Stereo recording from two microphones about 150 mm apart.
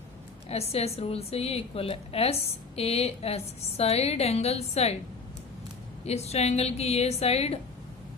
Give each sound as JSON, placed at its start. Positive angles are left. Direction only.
{"t": 0.4, "sound": "a woman's voice", "side_deg": 45}
{"t": 6.1, "sound": "a woman's voice", "side_deg": 45}